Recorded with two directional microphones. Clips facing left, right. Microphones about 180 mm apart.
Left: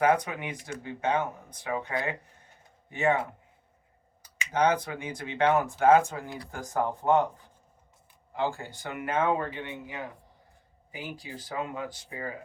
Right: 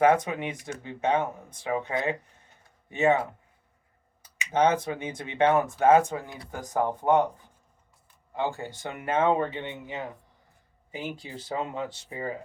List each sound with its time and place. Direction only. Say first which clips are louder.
0.0 s speech: right 3 dB; 25° right (ahead or behind)
8.4 s speech: right 1 dB; 20° right (ahead or behind)